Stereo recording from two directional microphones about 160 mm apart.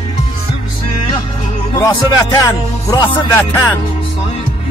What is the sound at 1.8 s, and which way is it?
Speech, 20° left (ahead or behind).